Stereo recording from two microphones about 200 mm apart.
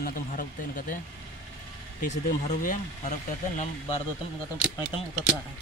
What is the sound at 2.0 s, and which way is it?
Speech, 40° left (ahead or behind).